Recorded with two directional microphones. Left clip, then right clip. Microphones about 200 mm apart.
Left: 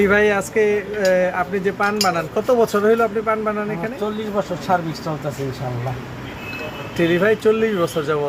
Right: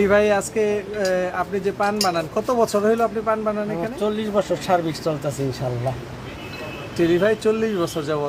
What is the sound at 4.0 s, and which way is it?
Speech, 45° right (ahead or behind).